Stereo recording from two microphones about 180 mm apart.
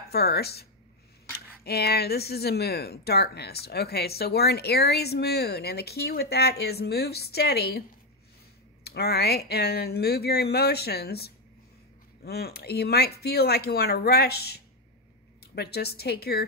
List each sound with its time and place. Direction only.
0.1 s speech: 60° left (ahead or behind)
8.8 s speech: 60° left (ahead or behind)